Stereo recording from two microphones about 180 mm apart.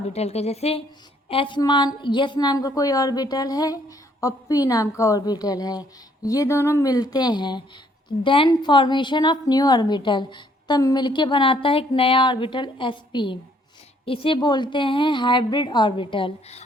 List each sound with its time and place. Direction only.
0.1 s a woman's voice: 35° left (ahead or behind)